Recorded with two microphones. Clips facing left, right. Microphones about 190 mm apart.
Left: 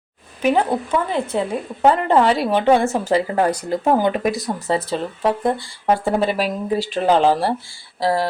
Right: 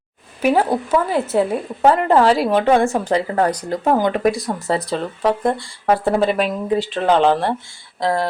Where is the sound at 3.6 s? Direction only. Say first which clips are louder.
Even; 25° left (ahead or behind).